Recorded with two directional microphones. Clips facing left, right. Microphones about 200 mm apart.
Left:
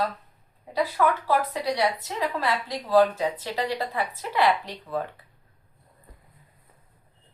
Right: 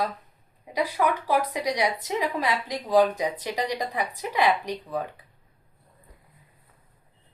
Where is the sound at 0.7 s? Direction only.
15° right (ahead or behind).